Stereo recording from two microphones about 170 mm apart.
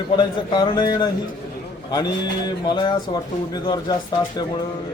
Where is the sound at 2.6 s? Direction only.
25° left (ahead or behind).